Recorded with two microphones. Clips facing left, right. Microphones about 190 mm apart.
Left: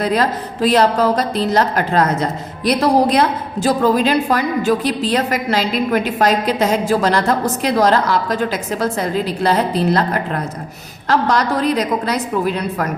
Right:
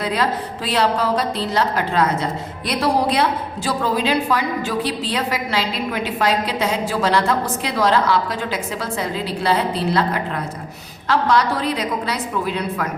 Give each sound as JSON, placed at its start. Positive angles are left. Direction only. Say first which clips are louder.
{"t": 0.0, "sound": "a woman's voice", "louder": "left 4 dB", "side_deg": 45}